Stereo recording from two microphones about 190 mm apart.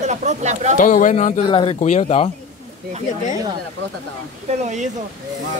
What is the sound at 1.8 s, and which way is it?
Speech, 40° left (ahead or behind).